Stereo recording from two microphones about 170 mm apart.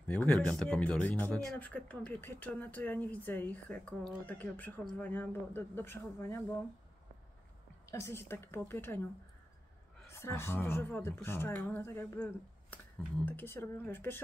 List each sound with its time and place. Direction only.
0.0 s speech: 10° left (ahead or behind)
7.9 s speech: 15° left (ahead or behind)
10.0 s speech: 15° left (ahead or behind)